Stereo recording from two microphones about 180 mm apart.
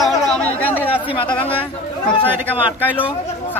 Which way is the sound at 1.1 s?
25° left (ahead or behind).